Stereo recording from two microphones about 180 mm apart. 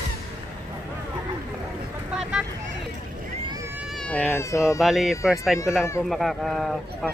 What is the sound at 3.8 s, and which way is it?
Cat, centre (ahead or behind).